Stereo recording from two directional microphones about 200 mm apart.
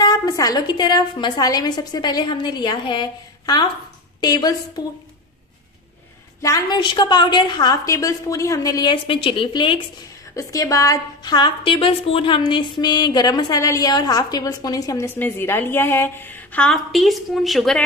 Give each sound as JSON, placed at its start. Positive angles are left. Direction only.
{"t": 0.0, "sound": "a woman's voice", "side_deg": 20}
{"t": 6.4, "sound": "a woman's voice", "side_deg": 20}